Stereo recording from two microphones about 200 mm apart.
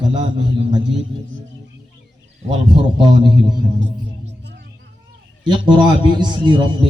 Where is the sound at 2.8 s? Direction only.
25° right (ahead or behind).